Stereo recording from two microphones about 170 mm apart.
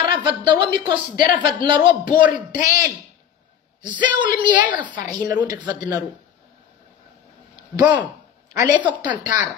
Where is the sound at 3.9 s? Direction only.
25° right (ahead or behind).